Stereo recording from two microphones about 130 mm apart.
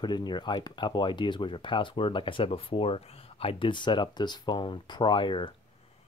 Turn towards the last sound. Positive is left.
turn(degrees=40)  # may be behind; listen again after turning